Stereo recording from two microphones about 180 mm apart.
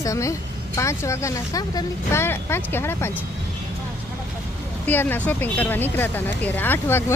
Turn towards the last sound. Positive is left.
turn(degrees=10)  # may be behind; listen again after turning